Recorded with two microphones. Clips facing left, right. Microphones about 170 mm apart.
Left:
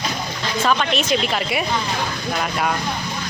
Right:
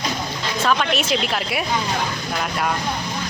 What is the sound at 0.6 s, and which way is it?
Speech, centre (ahead or behind).